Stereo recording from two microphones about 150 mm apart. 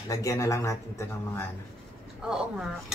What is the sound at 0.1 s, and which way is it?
Speech, 20° left (ahead or behind).